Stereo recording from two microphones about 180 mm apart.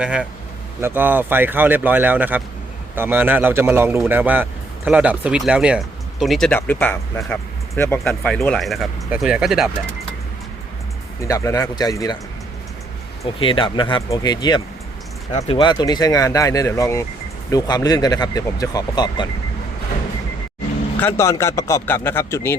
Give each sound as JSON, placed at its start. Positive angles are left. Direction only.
{"t": 0.0, "sound": "speech", "side_deg": -5}
{"t": 11.2, "sound": "speech", "side_deg": 15}
{"t": 13.4, "sound": "speech", "side_deg": 30}
{"t": 15.3, "sound": "speech", "side_deg": 35}
{"t": 21.0, "sound": "speech", "side_deg": 15}